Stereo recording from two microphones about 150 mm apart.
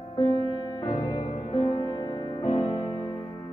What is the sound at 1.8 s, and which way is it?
Music, 30° left (ahead or behind).